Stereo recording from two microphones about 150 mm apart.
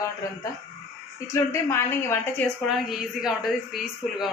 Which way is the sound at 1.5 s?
15° left (ahead or behind).